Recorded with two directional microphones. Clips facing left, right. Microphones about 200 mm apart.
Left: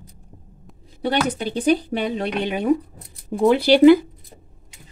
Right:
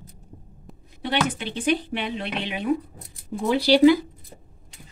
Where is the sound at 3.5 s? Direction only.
55° left (ahead or behind).